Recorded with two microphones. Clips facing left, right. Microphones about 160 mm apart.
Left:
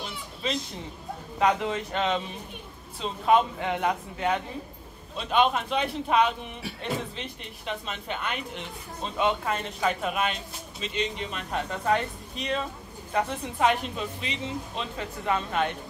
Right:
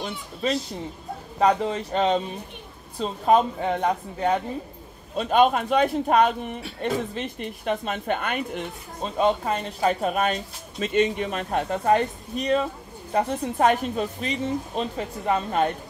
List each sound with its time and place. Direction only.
0.0 s cat: 45° right (ahead or behind)
1.4 s speech: 35° right (ahead or behind)
5.1 s speech: 45° right (ahead or behind)